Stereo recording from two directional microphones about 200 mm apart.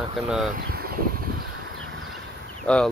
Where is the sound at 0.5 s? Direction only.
50° right (ahead or behind).